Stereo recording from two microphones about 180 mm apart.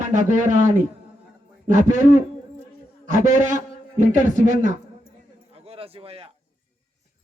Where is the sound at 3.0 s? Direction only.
45° right (ahead or behind).